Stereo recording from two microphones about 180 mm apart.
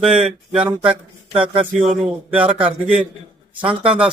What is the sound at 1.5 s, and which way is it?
Speech, 35° right (ahead or behind).